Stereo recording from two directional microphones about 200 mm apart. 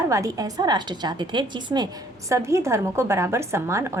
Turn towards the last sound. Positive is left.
turn(degrees=-15)  # may be behind; listen again after turning